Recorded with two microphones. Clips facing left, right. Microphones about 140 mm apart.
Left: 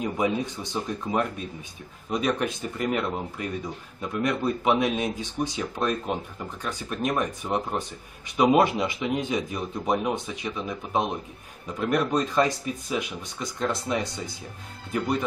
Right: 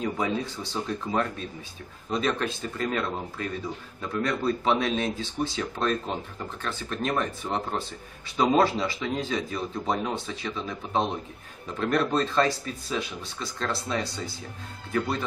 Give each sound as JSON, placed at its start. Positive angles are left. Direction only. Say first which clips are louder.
{"t": 0.0, "sound": "speech", "louder": "left 2 dB", "side_deg": 15}